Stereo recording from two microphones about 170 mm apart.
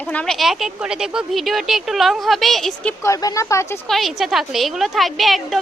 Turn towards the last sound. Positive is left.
turn(degrees=0)  # may be behind; listen again after turning